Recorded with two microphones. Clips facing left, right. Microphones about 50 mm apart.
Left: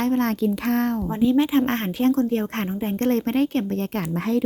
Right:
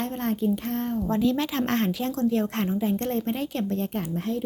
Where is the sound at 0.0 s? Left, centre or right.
Left.